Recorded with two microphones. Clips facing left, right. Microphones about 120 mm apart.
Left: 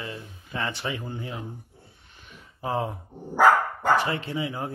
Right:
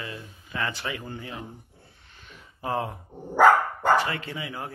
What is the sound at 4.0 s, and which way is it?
Speech, 20° left (ahead or behind).